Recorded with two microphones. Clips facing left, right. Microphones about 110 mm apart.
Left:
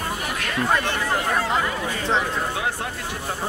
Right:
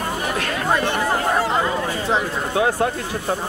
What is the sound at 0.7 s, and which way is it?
Speech, 20° right (ahead or behind).